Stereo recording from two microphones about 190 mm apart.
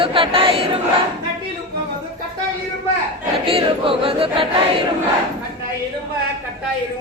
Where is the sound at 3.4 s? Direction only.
30° right (ahead or behind).